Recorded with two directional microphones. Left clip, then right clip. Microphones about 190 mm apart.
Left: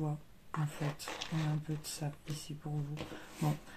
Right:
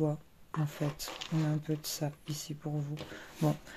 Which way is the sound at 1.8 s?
40° right (ahead or behind).